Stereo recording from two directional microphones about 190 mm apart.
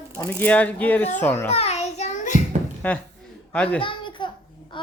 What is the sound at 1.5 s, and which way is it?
Child singing, 35° left (ahead or behind).